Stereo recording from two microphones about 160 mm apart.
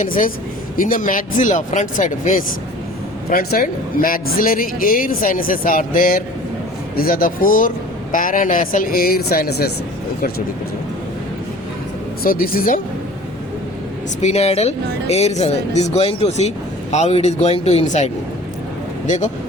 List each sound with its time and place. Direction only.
0.0 s a man's voice: 60° left (ahead or behind)
3.2 s a man's voice: 70° left (ahead or behind)
12.2 s a man's voice: 65° left (ahead or behind)
14.2 s speech: 45° left (ahead or behind)